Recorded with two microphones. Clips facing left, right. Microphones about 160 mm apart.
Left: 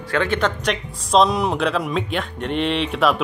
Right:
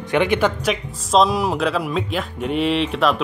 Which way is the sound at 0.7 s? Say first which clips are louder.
Right 1 dB; centre (ahead or behind).